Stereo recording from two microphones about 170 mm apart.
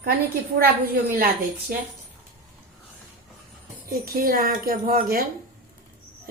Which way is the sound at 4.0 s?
55° right (ahead or behind).